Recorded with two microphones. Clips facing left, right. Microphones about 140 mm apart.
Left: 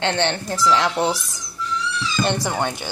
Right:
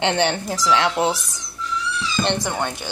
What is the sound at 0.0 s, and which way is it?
A woman's voice, 10° right (ahead or behind).